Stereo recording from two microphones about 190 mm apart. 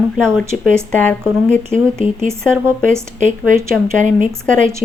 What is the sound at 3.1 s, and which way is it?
Speech, 40° right (ahead or behind).